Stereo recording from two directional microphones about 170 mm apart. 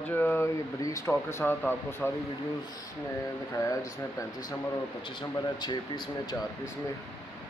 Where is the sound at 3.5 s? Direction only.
20° left (ahead or behind).